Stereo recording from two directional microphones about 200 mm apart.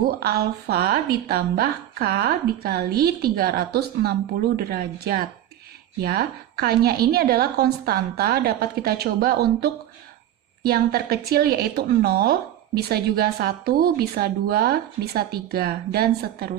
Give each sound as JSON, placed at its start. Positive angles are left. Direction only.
{"t": 0.1, "sound": "speech", "side_deg": -50}